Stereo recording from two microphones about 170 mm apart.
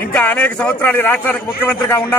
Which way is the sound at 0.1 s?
10° left (ahead or behind).